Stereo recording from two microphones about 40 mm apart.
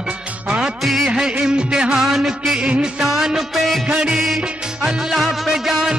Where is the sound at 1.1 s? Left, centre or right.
Centre.